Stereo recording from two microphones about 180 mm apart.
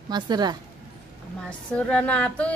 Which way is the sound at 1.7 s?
5° left (ahead or behind).